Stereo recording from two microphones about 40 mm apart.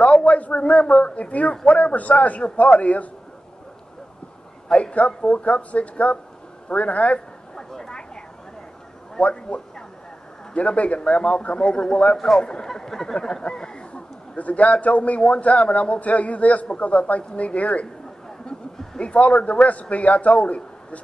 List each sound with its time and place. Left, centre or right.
0.0 s a man's voice: left
4.9 s a man's voice: left
7.2 s a sound: centre
9.2 s a man's voice: left
12.2 s speech: centre
13.4 s a sound: left
14.3 s a man's voice: left
18.9 s a man's voice: left